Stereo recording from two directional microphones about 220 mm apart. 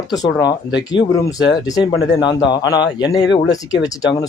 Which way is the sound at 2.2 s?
20° left (ahead or behind).